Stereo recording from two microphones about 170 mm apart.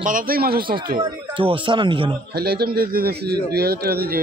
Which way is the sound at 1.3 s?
30° right (ahead or behind).